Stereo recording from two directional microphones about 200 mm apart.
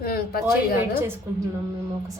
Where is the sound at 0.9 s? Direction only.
10° right (ahead or behind).